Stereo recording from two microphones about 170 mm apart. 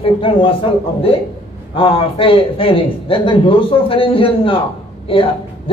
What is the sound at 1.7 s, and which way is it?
A man's voice, 35° left (ahead or behind).